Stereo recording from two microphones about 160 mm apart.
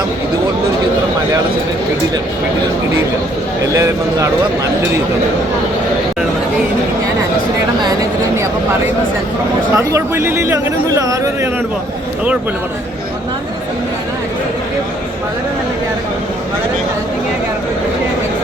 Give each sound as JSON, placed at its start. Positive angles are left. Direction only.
{"t": 9.7, "sound": "speech", "side_deg": -15}